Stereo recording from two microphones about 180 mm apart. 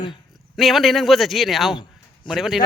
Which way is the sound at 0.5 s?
Centre (ahead or behind).